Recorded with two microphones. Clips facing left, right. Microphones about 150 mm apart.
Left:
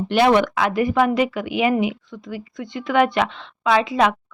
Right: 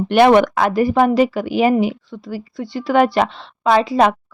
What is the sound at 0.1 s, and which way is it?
Speech, 55° right (ahead or behind).